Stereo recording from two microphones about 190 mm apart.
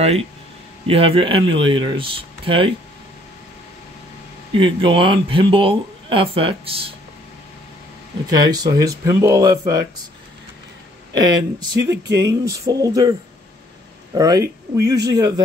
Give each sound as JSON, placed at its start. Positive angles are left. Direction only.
{"t": 0.8, "sound": "speech", "side_deg": -30}
{"t": 4.6, "sound": "speech", "side_deg": -25}
{"t": 8.3, "sound": "speech", "side_deg": -20}
{"t": 11.1, "sound": "speech", "side_deg": -20}
{"t": 14.1, "sound": "speech", "side_deg": -20}